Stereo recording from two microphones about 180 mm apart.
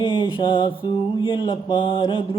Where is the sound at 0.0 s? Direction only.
25° left (ahead or behind).